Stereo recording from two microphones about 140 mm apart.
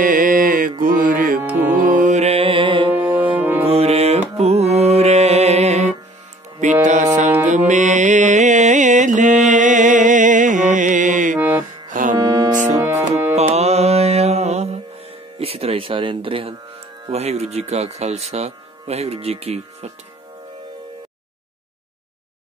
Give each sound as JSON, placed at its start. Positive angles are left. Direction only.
{"t": 0.0, "sound": "mantra", "side_deg": -80}
{"t": 1.4, "sound": "music", "side_deg": -10}
{"t": 1.9, "sound": "music", "side_deg": -65}
{"t": 3.3, "sound": "brass instrument", "side_deg": -15}
{"t": 3.6, "sound": "brass instrument", "side_deg": -45}
{"t": 4.4, "sound": "music", "side_deg": -50}
{"t": 11.3, "sound": "music", "side_deg": -15}
{"t": 11.9, "sound": "music", "side_deg": -70}
{"t": 12.2, "sound": "music", "side_deg": -25}
{"t": 13.4, "sound": "music", "side_deg": -50}
{"t": 17.1, "sound": "speech", "side_deg": -50}